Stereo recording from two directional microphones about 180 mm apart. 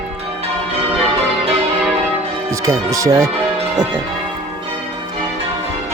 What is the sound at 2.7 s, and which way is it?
Speech, 15° right (ahead or behind).